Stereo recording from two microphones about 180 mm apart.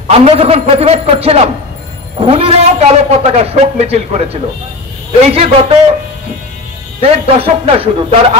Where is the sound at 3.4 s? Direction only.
35° right (ahead or behind).